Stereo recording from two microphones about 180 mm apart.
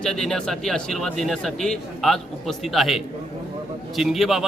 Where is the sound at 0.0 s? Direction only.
Centre (ahead or behind).